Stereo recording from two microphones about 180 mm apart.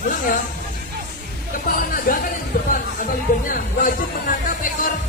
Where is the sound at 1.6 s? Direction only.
50° left (ahead or behind).